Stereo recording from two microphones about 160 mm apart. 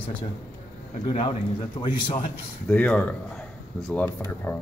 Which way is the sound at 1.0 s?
35° left (ahead or behind).